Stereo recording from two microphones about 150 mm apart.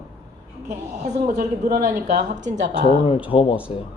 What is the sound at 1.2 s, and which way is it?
Speech, 80° right.